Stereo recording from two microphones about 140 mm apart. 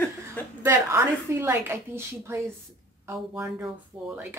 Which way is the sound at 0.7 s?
20° right (ahead or behind).